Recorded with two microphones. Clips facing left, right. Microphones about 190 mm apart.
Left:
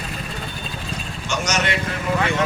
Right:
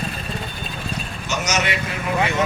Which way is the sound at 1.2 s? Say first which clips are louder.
Even; 10° right (ahead or behind).